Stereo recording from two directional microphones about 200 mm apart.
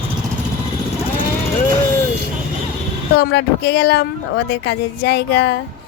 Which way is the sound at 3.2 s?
55° left (ahead or behind).